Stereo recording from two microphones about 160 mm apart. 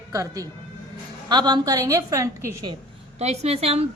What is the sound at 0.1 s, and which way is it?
Speech, 20° right (ahead or behind).